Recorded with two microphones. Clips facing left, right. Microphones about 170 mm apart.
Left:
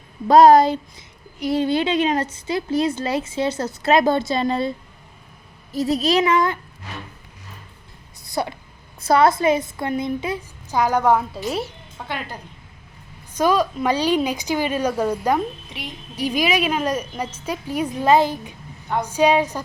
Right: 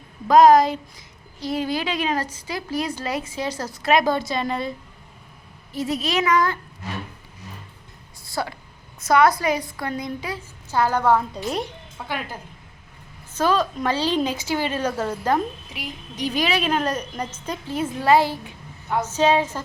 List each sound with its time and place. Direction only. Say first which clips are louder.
0.3 s a child's voice: left 2 dB; 30° left (ahead or behind)
5.7 s speech: left 5 dB; 40° left (ahead or behind)
8.3 s a woman's voice: left 3 dB; 20° left (ahead or behind)
11.3 s a woman's voice: left 1 dB; centre (ahead or behind)
13.3 s a woman's voice: left 2 dB; 10° left (ahead or behind)